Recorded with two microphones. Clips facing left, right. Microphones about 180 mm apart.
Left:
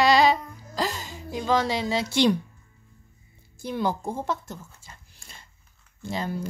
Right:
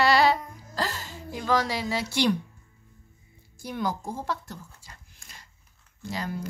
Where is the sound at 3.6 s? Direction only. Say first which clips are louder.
Left 3 dB; 25° left (ahead or behind).